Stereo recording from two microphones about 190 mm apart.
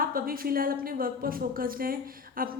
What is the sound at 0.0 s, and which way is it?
A woman's voice, 50° right (ahead or behind).